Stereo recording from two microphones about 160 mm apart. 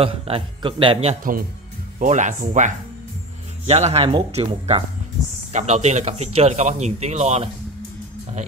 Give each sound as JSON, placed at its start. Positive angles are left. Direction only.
{"t": 0.0, "sound": "speech", "side_deg": -35}
{"t": 2.0, "sound": "speech", "side_deg": -50}
{"t": 5.5, "sound": "speech", "side_deg": -45}